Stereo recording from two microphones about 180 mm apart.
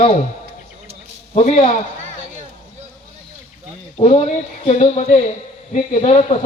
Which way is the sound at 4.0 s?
30° left (ahead or behind).